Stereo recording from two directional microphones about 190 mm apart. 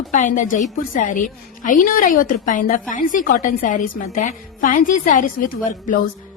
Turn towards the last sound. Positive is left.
turn(degrees=45)  # may be behind; listen again after turning